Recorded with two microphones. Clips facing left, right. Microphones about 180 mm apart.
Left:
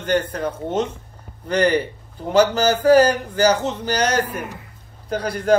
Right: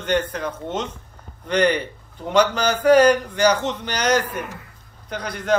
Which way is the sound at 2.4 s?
25° left (ahead or behind).